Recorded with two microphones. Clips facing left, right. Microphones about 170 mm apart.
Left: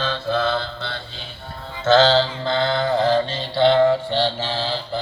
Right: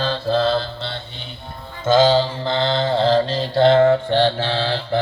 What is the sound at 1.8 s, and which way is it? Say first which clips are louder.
Mantra: right 1 dB; 10° right (ahead or behind).